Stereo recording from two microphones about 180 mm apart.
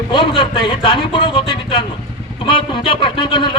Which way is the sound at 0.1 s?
25° left (ahead or behind).